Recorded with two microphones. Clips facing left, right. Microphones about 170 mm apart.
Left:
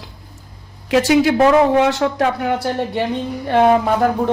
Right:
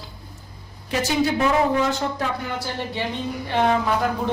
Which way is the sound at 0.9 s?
85° left.